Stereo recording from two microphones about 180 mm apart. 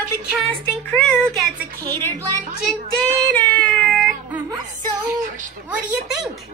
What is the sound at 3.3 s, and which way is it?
Baby cry, 10° left (ahead or behind).